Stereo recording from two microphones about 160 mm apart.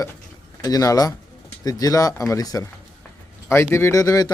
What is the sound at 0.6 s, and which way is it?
Speech, 25° left (ahead or behind).